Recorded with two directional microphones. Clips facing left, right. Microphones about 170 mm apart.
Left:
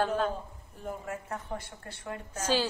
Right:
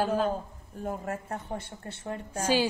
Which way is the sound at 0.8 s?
45° right (ahead or behind).